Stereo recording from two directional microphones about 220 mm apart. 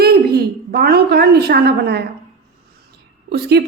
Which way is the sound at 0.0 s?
45° right (ahead or behind).